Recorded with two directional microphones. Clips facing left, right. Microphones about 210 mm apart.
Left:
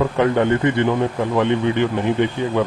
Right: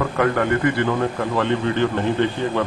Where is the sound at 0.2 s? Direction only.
20° left (ahead or behind).